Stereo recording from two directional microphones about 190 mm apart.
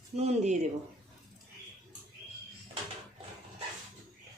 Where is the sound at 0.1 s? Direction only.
35° right (ahead or behind).